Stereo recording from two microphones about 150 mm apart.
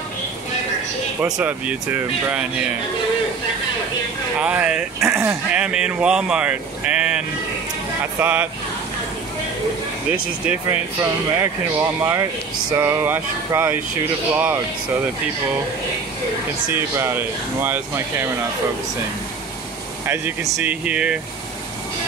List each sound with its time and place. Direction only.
1.2 s speech: 10° right (ahead or behind)
4.4 s speech: 5° right (ahead or behind)
5.0 s speech: 20° right (ahead or behind)
5.5 s speech: 5° right (ahead or behind)
10.7 s speech: 20° right (ahead or behind)
16.7 s speech: 15° right (ahead or behind)
20.1 s speech: 15° right (ahead or behind)